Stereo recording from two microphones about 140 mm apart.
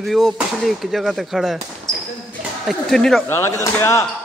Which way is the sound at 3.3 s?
20° left (ahead or behind).